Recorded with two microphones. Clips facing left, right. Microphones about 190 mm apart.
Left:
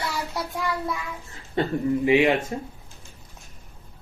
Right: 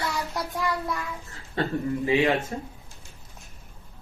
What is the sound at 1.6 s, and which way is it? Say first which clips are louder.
Speech: left 4 dB; 15° left (ahead or behind).